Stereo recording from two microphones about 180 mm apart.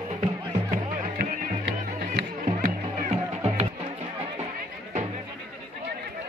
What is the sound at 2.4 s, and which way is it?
Music, 35° right (ahead or behind).